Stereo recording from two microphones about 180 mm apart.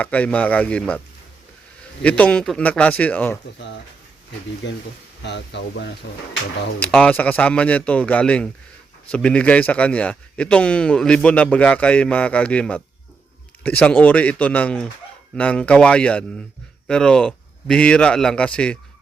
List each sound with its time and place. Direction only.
0.0 s a man's voice: 10° left (ahead or behind)
2.0 s a man's voice: 5° left (ahead or behind)
4.6 s speech: 85° left
5.2 s speech: 70° left (ahead or behind)
6.7 s a man's voice: 5° left (ahead or behind)